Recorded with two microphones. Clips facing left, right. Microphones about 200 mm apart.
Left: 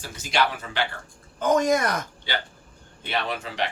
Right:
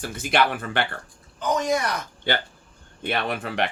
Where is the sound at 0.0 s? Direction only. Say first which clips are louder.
Right 3 dB; 55° right (ahead or behind).